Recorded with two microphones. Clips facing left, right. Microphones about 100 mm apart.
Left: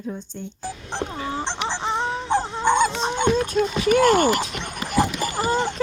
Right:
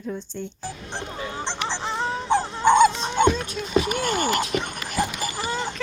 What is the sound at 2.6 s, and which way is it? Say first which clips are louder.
Dog: right 4 dB; 10° right (ahead or behind).